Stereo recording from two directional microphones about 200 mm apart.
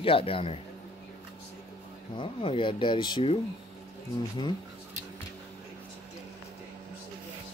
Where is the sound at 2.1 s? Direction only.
25° left (ahead or behind).